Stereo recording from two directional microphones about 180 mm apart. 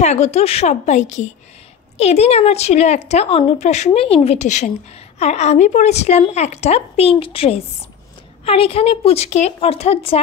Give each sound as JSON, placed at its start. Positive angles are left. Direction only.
{"t": 0.0, "sound": "a woman's voice", "side_deg": 40}